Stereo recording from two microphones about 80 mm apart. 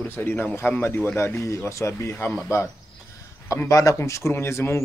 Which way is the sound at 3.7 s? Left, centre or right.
Left.